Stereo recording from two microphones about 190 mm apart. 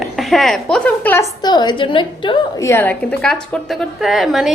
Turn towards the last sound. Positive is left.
turn(degrees=0)  # may be behind; listen again after turning